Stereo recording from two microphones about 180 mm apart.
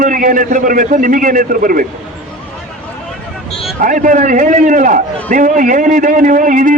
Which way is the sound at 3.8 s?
50° right (ahead or behind).